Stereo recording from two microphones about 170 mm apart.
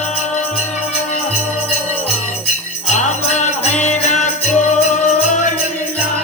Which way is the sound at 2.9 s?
45° left (ahead or behind).